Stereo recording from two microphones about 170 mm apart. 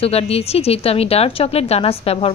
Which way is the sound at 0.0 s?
35° left (ahead or behind).